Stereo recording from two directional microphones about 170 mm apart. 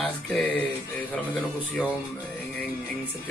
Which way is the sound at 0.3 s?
5° left (ahead or behind).